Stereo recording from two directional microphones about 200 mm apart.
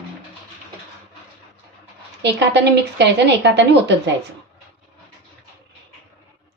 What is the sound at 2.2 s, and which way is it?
Speech, 60° right (ahead or behind).